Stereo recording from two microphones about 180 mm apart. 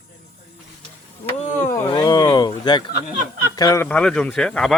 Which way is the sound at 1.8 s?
25° left (ahead or behind).